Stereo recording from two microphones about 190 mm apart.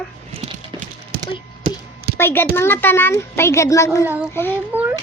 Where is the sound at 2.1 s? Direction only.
10° left (ahead or behind).